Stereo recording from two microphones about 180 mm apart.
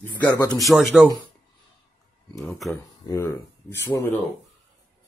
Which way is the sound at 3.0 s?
15° left (ahead or behind).